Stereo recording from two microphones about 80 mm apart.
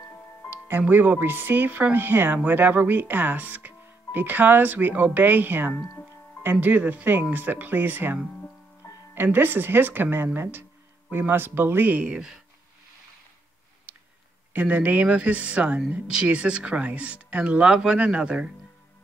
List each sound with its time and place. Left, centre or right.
0.5 s speech: right; by 12.4 s centre
14.5 s speech: centre